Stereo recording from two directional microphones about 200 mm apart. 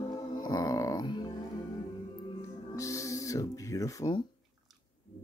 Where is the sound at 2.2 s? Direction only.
15° left (ahead or behind).